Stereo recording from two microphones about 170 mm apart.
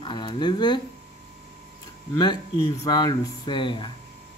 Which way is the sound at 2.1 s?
25° left (ahead or behind).